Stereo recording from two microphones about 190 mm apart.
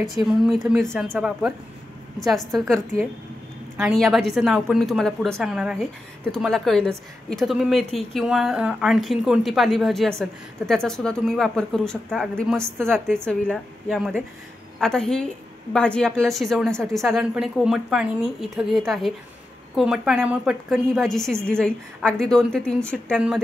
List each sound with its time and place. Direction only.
0.0 s a woman's voice: centre (ahead or behind)
12.6 s a woman's voice: 15° right (ahead or behind)
12.9 s a woman's voice: 5° left (ahead or behind)